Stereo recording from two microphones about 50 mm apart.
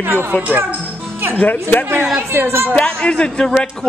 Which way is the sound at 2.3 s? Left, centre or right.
Right.